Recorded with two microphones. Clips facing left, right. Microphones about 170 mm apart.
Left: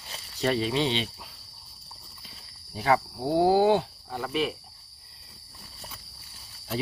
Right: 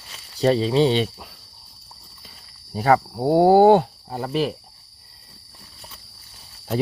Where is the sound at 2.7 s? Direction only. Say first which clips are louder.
Right 6 dB; 45° right (ahead or behind).